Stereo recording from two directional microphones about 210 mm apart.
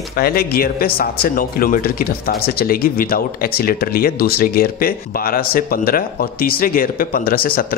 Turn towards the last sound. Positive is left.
turn(degrees=45)  # may be behind; listen again after turning